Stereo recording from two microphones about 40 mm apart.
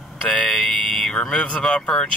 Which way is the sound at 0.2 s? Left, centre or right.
Left.